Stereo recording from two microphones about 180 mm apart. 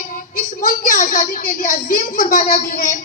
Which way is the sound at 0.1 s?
45° left (ahead or behind).